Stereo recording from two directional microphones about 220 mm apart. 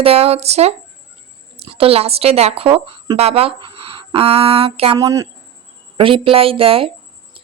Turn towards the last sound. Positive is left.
turn(degrees=-25)  # may be behind; listen again after turning